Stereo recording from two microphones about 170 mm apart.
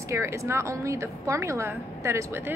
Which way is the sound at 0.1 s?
15° right (ahead or behind).